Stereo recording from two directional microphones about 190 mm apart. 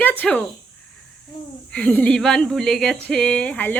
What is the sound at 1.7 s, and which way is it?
Speech, 5° left (ahead or behind).